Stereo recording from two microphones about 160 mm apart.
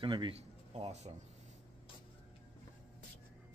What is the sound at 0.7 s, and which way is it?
Speech, 45° right (ahead or behind).